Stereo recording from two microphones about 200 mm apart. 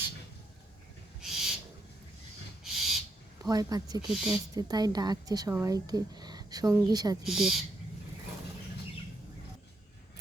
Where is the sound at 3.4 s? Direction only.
20° right (ahead or behind).